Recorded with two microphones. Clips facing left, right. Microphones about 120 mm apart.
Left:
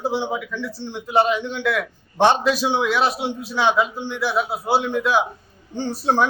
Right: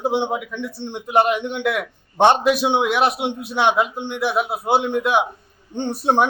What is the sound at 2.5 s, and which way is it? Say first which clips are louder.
A man's voice: right 2 dB; 60° right (ahead or behind).